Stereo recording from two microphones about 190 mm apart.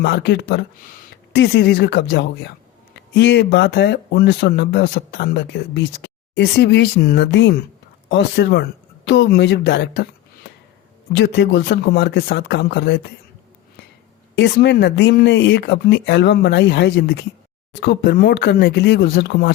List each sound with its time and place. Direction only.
0.0 s speech: 60° left (ahead or behind)
11.1 s speech: 70° left (ahead or behind)
14.3 s speech: 65° left (ahead or behind)